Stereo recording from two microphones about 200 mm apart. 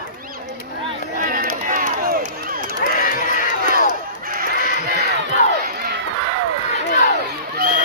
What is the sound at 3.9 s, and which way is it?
Fowl, 45° right (ahead or behind).